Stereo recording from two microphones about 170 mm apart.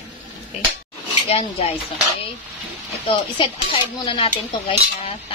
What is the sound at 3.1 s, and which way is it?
Dishes, 30° left (ahead or behind).